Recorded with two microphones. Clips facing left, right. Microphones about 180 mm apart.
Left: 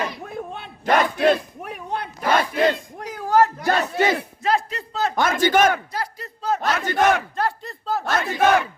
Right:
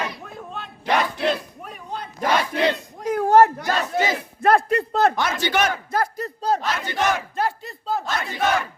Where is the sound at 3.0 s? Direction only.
55° right (ahead or behind).